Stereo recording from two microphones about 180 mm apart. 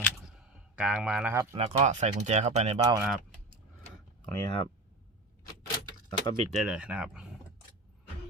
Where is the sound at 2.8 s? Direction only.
20° right (ahead or behind).